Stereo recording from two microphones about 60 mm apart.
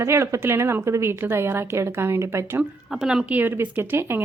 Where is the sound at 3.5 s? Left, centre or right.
Right.